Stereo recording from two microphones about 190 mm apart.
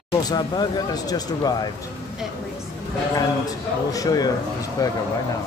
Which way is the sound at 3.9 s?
20° left (ahead or behind).